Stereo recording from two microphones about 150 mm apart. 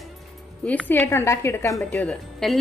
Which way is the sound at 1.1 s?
20° left (ahead or behind).